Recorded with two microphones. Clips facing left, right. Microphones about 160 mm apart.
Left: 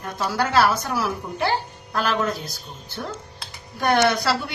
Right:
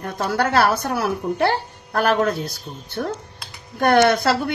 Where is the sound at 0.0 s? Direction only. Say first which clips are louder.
Right 3 dB; 55° right (ahead or behind).